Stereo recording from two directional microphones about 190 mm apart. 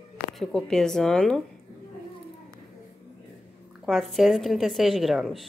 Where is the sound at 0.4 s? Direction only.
5° left (ahead or behind).